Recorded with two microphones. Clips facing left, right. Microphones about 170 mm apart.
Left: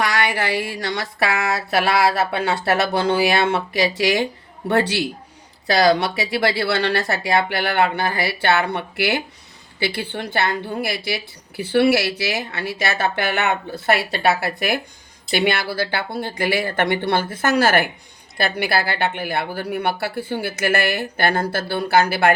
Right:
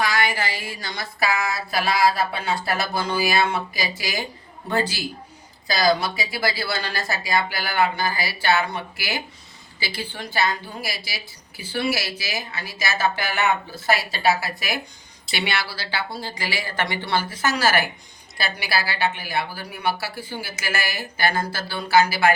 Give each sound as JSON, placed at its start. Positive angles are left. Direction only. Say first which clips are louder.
{"t": 0.0, "sound": "a woman's voice", "louder": "left 2 dB", "side_deg": 65}
{"t": 15.3, "sound": "a woman's voice", "louder": "left 7 dB", "side_deg": 50}